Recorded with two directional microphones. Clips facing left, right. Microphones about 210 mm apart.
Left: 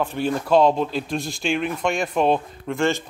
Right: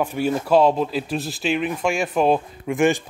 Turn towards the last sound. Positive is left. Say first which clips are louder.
# right 3 dB
turn(degrees=-15)  # may be behind; listen again after turning